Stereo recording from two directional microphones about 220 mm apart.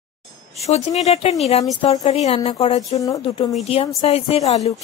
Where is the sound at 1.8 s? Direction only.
15° left (ahead or behind).